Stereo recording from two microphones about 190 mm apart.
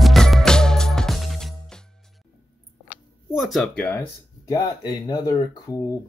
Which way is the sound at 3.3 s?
Centre (ahead or behind).